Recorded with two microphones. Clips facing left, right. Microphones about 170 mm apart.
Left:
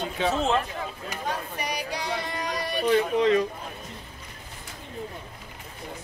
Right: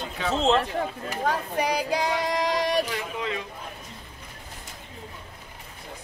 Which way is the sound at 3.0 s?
35° left (ahead or behind).